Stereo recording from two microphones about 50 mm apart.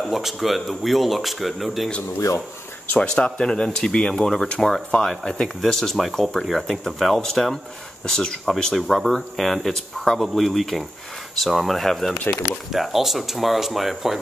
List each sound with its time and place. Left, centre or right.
0.1 s speech: centre
2.1 s speech: left
3.0 s speech: centre